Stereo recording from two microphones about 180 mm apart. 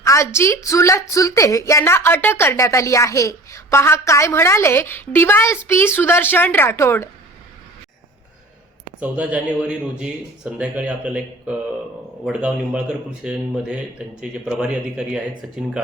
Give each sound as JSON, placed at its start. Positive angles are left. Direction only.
{"t": 0.0, "sound": "a sound", "side_deg": 15}
{"t": 0.3, "sound": "a woman's voice", "side_deg": 15}
{"t": 9.0, "sound": "a man's voice", "side_deg": -10}